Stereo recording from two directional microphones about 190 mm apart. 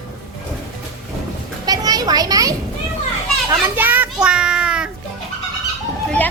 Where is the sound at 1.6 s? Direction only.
20° right (ahead or behind); by 4.8 s 5° right (ahead or behind).